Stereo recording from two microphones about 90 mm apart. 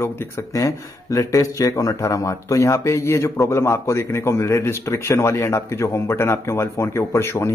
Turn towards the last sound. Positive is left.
turn(degrees=30)  # may be behind; listen again after turning